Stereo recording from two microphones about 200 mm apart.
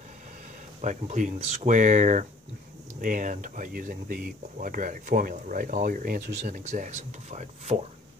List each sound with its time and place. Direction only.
0.7 s speech: 35° right (ahead or behind); by 6.4 s 55° right (ahead or behind)
6.4 s speech: 35° right (ahead or behind)